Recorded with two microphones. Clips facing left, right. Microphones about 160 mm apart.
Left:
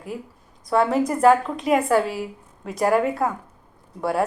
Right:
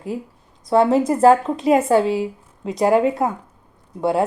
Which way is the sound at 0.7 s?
30° right (ahead or behind).